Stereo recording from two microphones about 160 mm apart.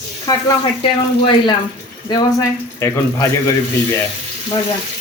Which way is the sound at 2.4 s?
20° left (ahead or behind).